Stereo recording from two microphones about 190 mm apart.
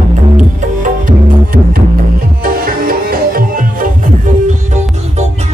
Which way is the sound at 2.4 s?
50° right (ahead or behind).